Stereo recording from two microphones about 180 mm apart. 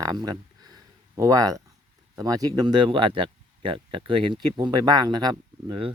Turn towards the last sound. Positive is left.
turn(degrees=-25)  # may be behind; listen again after turning